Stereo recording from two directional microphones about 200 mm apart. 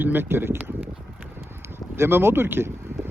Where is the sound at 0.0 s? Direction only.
10° right (ahead or behind).